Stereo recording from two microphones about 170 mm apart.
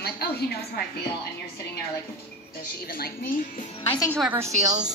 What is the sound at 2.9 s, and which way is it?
Speech, 60° left (ahead or behind).